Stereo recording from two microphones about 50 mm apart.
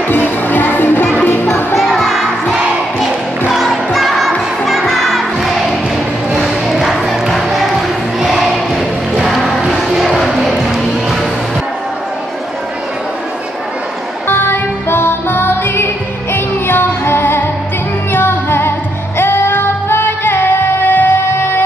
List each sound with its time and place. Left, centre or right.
0.1 s music: left
1.8 s music: centre
6.3 s crowd: centre
8.3 s a sound: centre
9.1 s music: centre
14.2 s music: left